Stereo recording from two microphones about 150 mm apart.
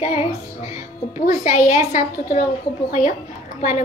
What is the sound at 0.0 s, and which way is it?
A child's voice, 45° left (ahead or behind).